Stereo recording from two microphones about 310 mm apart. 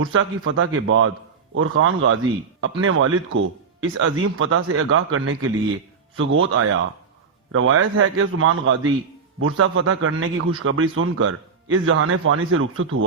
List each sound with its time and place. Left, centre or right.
0.0 s a man's voice: right